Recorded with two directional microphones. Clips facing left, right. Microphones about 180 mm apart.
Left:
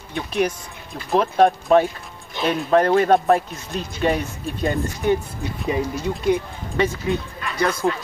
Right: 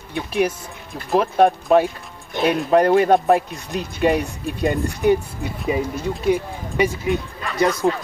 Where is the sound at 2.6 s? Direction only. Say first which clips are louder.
Right 1 dB; 10° right (ahead or behind).